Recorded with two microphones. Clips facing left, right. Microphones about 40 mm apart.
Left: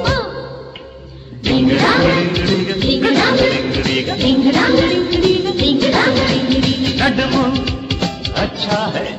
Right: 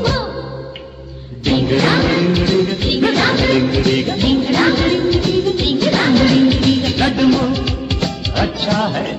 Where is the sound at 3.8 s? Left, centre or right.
Left.